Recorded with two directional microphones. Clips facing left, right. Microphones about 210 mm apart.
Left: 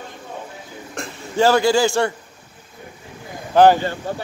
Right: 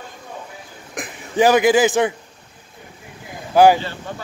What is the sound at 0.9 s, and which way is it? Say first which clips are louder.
Speech: right 2 dB; 15° right (ahead or behind).